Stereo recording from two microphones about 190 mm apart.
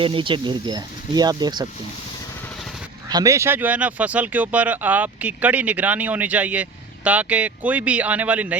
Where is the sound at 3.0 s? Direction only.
20° right (ahead or behind).